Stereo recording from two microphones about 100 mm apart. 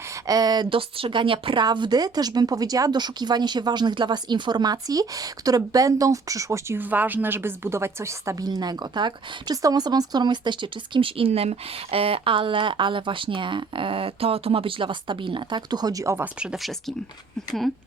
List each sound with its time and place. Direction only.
0.3 s speech: 40° right (ahead or behind)
0.7 s speech: 65° right (ahead or behind)
1.6 s speech: 45° right (ahead or behind); by 6.7 s 30° right (ahead or behind)
6.7 s a woman's voice: 20° right (ahead or behind)
8.4 s speech: 45° right (ahead or behind)
16.2 s speech: 10° right (ahead or behind)